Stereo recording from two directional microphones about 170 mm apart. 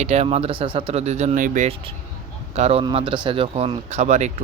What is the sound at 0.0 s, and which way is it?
Speech, 40° right (ahead or behind).